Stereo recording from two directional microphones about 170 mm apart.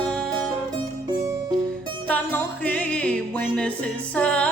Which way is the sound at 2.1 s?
10° left (ahead or behind).